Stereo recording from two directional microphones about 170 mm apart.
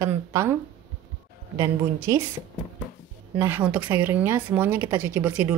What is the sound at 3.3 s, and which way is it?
Speech, 10° right (ahead or behind).